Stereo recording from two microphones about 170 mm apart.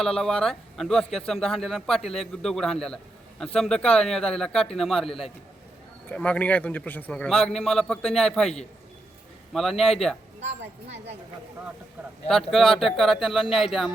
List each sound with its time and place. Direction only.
0.0 s a man's voice: 5° left (ahead or behind)
6.1 s a man's voice: 10° left (ahead or behind)
10.8 s speech: 40° right (ahead or behind)
12.3 s a man's voice: centre (ahead or behind)